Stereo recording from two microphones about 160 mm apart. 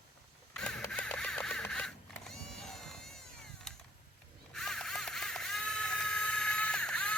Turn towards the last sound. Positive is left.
turn(degrees=5)  # may be behind; listen again after turning